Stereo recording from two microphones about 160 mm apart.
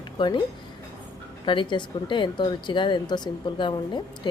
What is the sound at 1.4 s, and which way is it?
Speech, 30° left (ahead or behind).